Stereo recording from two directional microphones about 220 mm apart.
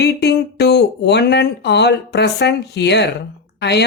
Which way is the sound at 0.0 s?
50° left (ahead or behind).